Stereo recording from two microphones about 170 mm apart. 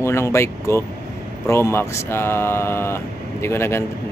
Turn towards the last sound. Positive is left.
turn(degrees=15)  # may be behind; listen again after turning